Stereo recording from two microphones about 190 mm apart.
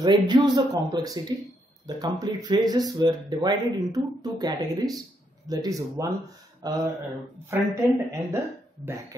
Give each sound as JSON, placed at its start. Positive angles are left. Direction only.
{"t": 0.0, "sound": "a woman's voice", "side_deg": -25}